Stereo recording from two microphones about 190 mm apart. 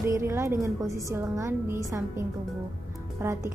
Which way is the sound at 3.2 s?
15° right (ahead or behind).